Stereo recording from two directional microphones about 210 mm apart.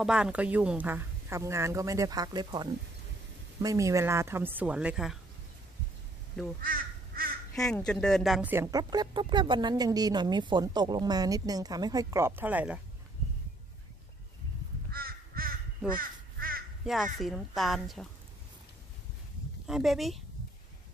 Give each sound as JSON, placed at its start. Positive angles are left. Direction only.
{"t": 0.0, "sound": "a woman's voice", "side_deg": -5}
{"t": 6.6, "sound": "crow", "side_deg": -40}
{"t": 7.5, "sound": "a woman's voice", "side_deg": 5}
{"t": 14.9, "sound": "crow", "side_deg": -45}
{"t": 16.8, "sound": "speech", "side_deg": 0}
{"t": 19.7, "sound": "speech", "side_deg": 0}